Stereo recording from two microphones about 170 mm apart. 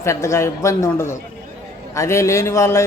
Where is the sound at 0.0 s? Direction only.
15° left (ahead or behind).